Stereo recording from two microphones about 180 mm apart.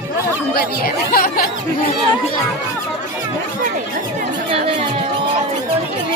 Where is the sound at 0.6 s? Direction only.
55° left (ahead or behind).